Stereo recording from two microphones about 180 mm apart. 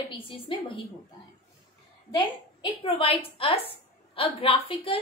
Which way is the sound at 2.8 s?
30° left (ahead or behind).